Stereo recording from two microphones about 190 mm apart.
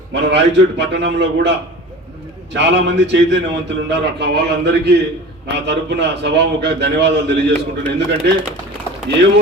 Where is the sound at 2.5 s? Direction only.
65° right (ahead or behind).